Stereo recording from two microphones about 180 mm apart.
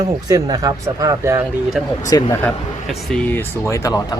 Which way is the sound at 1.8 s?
Centre (ahead or behind).